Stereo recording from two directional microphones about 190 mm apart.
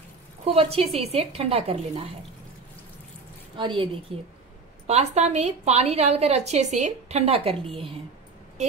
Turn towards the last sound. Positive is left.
turn(degrees=-30)  # may be behind; listen again after turning